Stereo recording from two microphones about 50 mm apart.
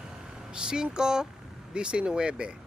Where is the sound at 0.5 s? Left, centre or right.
Centre.